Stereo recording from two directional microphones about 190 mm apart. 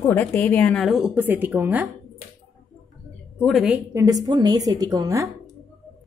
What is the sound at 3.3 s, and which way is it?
Speech, centre (ahead or behind).